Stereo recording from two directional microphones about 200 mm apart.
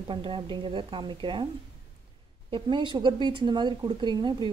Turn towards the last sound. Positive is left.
turn(degrees=-20)  # may be behind; listen again after turning